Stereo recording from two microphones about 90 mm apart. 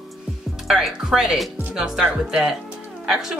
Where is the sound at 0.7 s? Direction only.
5° right (ahead or behind).